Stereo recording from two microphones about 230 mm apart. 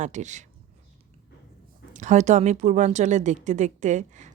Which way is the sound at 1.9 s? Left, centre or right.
Right.